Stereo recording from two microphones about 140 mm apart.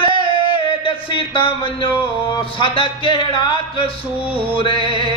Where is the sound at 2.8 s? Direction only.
40° left (ahead or behind).